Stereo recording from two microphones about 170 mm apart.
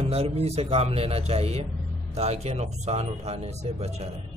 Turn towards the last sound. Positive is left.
turn(degrees=-40)  # may be behind; listen again after turning